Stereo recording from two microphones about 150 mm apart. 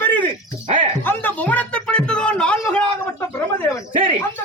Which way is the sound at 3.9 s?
35° right (ahead or behind).